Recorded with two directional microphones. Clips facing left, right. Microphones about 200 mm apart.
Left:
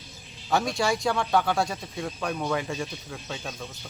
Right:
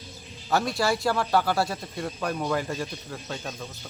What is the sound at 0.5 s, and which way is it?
Speech, 5° right (ahead or behind).